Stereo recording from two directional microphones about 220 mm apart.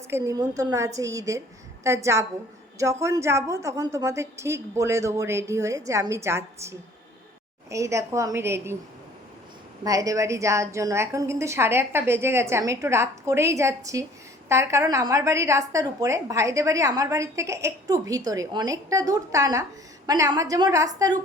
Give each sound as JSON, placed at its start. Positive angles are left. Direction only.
{"t": 0.1, "sound": "a woman's voice", "side_deg": -15}
{"t": 9.8, "sound": "a woman's voice", "side_deg": -15}